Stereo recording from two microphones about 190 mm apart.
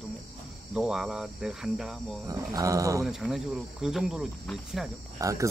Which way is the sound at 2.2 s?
15° right (ahead or behind).